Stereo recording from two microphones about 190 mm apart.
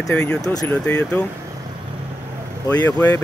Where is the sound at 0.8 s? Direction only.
5° left (ahead or behind).